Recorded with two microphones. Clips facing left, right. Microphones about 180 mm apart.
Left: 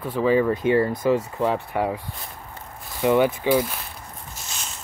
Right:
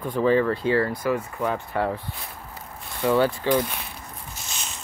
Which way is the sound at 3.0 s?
15° left (ahead or behind).